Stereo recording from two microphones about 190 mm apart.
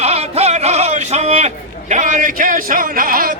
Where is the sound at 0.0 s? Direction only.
35° right (ahead or behind).